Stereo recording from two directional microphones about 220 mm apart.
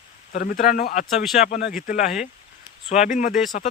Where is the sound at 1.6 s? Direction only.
40° left (ahead or behind).